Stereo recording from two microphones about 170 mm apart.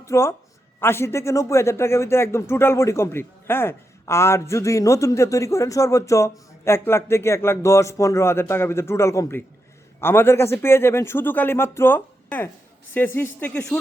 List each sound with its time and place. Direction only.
0.0 s a man's voice: 15° left (ahead or behind)